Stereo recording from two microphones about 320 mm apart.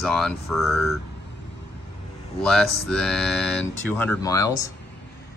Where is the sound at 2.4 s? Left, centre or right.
Centre.